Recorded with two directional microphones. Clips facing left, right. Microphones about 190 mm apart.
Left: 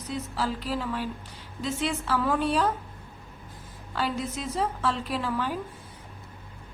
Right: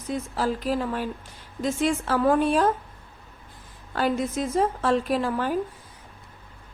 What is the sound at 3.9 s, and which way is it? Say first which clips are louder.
A woman's voice: right 5 dB; 50° right (ahead or behind).